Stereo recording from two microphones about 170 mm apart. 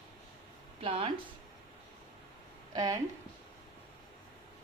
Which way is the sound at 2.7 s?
20° right (ahead or behind).